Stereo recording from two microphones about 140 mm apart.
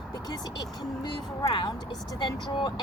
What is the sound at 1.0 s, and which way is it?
Speech, 35° left (ahead or behind).